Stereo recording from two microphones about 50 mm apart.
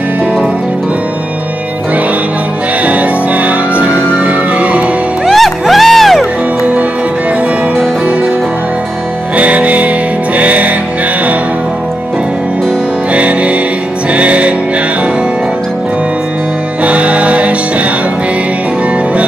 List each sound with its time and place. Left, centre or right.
2.8 s music: right
5.2 s music: centre
9.4 s music: right
13.1 s music: right
16.8 s music: right